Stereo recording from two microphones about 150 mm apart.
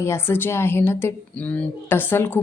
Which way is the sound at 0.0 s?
15° left (ahead or behind).